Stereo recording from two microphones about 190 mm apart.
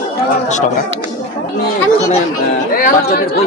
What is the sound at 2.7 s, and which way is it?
Speech, 50° left (ahead or behind).